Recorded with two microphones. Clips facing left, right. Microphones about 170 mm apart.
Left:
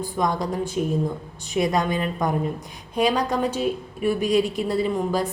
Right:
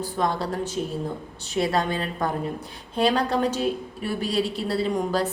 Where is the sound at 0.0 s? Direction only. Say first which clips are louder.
Left 1 dB; 15° left (ahead or behind).